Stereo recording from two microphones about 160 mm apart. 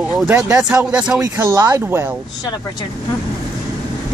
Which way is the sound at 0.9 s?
5° right (ahead or behind).